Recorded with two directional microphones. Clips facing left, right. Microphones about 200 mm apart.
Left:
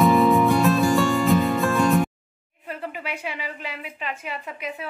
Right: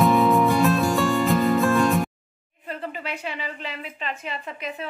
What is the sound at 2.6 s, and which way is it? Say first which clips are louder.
A woman's voice: even; 10° left (ahead or behind).